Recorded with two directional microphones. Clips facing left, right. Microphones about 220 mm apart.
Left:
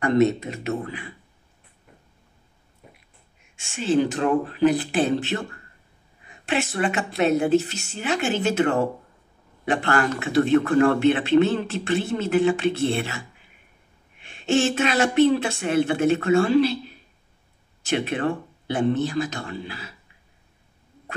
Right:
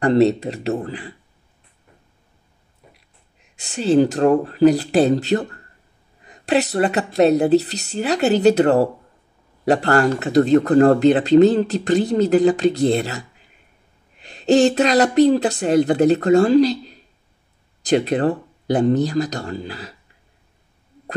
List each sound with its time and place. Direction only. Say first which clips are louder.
0.0 s speech: right 4 dB; 35° right (ahead or behind)
3.5 s speech: right 6 dB; 35° right (ahead or behind)